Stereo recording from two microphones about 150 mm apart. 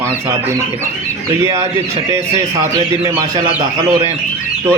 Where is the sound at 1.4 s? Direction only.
20° right (ahead or behind).